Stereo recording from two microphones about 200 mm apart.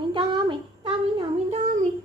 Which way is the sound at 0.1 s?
25° right (ahead or behind).